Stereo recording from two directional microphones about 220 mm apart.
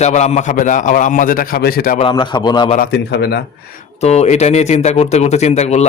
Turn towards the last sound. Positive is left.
turn(degrees=30)  # may be behind; listen again after turning